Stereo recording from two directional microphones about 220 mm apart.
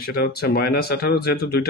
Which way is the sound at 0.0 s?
45° left (ahead or behind).